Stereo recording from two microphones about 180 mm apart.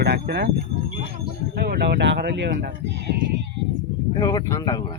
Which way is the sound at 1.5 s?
60° right (ahead or behind).